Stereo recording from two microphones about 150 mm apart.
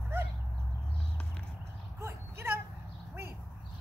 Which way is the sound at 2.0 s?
15° right (ahead or behind).